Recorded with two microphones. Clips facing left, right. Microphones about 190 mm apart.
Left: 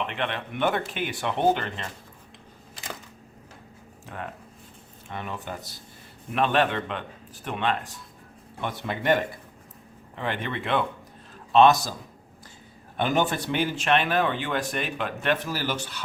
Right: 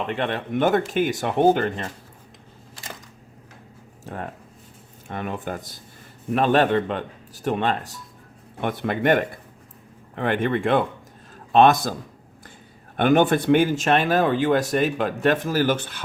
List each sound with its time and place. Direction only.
0.1 s speech: 40° right (ahead or behind)
4.0 s speech: 40° right (ahead or behind)
5.0 s speech: 50° right (ahead or behind)
8.6 s speech: 55° right (ahead or behind)
13.0 s speech: 55° right (ahead or behind)